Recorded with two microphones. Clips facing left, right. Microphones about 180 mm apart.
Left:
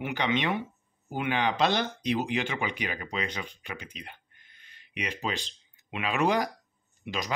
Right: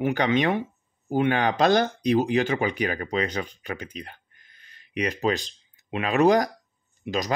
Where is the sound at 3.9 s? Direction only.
40° right (ahead or behind).